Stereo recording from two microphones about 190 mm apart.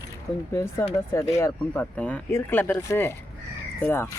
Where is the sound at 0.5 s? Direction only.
15° left (ahead or behind).